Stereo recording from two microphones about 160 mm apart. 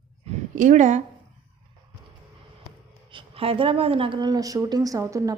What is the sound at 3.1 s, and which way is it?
A woman's voice, 35° right (ahead or behind).